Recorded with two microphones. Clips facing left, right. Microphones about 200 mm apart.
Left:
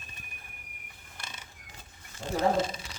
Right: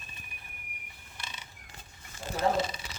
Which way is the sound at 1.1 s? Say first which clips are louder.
Even; 50° left (ahead or behind).